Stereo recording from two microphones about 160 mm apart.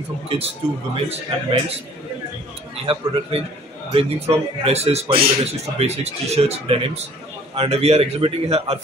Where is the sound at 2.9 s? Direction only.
40° right (ahead or behind).